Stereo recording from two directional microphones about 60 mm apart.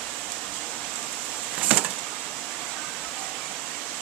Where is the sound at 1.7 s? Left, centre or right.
Right.